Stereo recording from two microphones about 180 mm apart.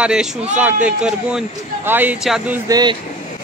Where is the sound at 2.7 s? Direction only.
25° right (ahead or behind).